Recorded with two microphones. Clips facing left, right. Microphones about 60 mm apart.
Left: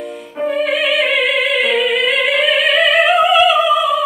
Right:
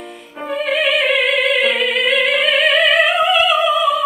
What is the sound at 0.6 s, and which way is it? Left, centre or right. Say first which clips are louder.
Opera: even; centre.